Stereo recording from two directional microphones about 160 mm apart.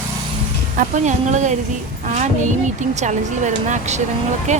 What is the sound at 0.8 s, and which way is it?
Speech, 50° right (ahead or behind).